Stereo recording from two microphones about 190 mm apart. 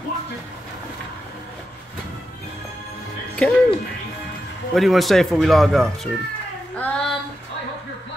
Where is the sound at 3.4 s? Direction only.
5° left (ahead or behind).